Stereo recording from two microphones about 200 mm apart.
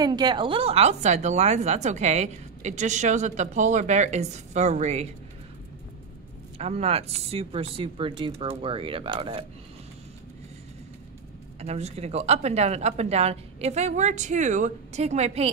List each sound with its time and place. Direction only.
0.0 s a woman's voice: 20° right (ahead or behind)
6.6 s speech: 30° right (ahead or behind)
11.6 s a woman's voice: 30° right (ahead or behind)